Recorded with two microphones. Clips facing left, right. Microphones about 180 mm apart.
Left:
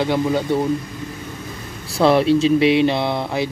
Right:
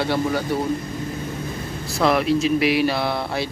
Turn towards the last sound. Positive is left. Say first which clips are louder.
# left 3 dB
turn(degrees=20)  # may be behind; listen again after turning